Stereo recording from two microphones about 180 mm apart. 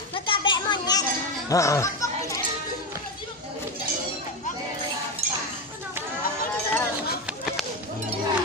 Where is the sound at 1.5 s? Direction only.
15° left (ahead or behind).